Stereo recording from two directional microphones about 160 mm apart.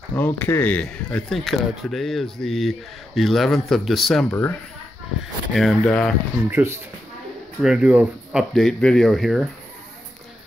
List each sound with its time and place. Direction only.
0.1 s speech: 15° left (ahead or behind)
4.3 s speech: 10° left (ahead or behind)
5.5 s speech: centre (ahead or behind)
6.5 s speech: 15° right (ahead or behind)
7.6 s speech: 5° right (ahead or behind)